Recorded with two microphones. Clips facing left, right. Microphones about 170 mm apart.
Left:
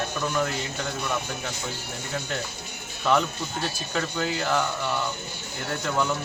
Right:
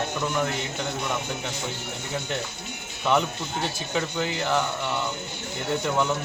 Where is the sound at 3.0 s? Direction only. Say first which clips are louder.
Even; 20° right (ahead or behind).